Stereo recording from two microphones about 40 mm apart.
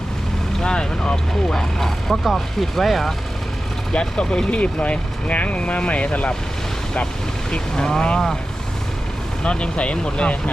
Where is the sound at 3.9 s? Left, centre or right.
Left.